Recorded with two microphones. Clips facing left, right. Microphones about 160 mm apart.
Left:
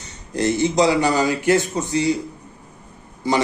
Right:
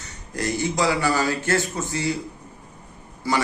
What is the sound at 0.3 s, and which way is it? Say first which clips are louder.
A man's voice: left 6 dB; 25° left (ahead or behind).